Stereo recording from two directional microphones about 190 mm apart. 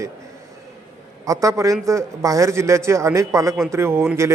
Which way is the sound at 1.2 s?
15° right (ahead or behind).